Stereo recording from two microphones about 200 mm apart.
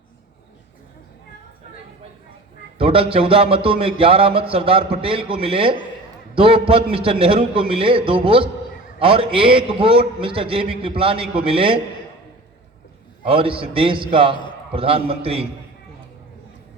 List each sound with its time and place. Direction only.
2.7 s speech: 30° right (ahead or behind)
13.2 s speech: 25° right (ahead or behind)